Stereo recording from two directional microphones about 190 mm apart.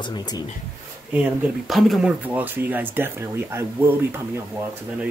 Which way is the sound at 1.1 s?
5° right (ahead or behind).